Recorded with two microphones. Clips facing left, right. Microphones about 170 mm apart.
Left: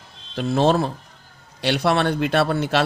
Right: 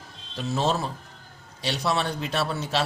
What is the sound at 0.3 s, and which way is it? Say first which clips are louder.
A man's voice: left 7 dB; 55° left (ahead or behind).